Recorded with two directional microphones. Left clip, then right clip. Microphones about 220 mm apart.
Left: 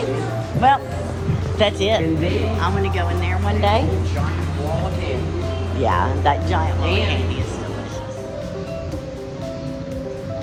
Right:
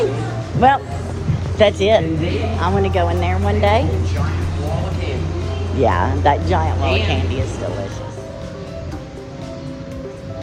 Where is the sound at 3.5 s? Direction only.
15° left (ahead or behind).